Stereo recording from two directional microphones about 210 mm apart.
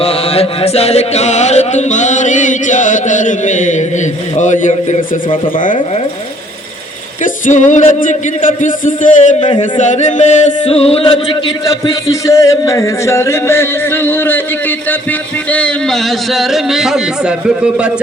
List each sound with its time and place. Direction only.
0.0 s speech: 30° left (ahead or behind)
7.4 s speech: 35° left (ahead or behind)
11.6 s music: 15° left (ahead or behind)
15.5 s a man's voice: 5° left (ahead or behind)